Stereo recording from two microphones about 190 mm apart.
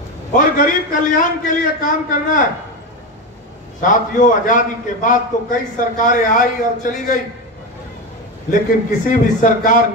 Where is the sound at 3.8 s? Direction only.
45° left (ahead or behind).